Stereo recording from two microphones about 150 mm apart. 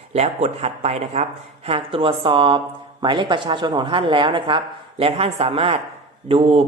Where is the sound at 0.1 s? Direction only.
45° right (ahead or behind).